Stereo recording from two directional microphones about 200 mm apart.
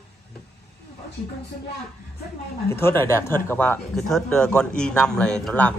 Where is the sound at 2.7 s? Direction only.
10° left (ahead or behind).